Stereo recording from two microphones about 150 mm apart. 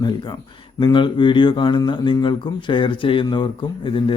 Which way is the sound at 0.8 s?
30° left (ahead or behind).